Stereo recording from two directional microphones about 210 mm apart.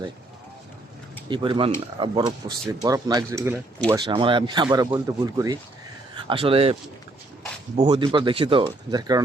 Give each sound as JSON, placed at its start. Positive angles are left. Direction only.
{"t": 1.3, "sound": "speech", "side_deg": -25}
{"t": 7.8, "sound": "speech", "side_deg": -20}